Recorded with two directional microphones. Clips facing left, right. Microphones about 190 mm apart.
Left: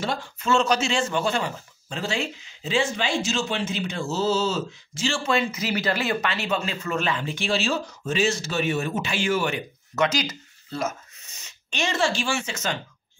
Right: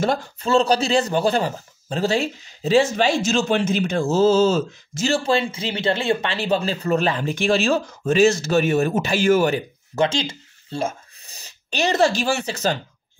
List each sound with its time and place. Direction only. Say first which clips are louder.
0.0 s speech: right 6 dB; 40° right (ahead or behind)